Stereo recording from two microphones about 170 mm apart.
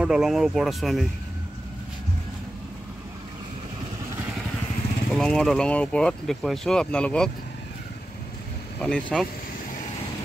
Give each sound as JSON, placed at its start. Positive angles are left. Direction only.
{"t": 0.0, "sound": "speech", "side_deg": -5}
{"t": 5.1, "sound": "speech", "side_deg": 0}
{"t": 8.8, "sound": "speech", "side_deg": 5}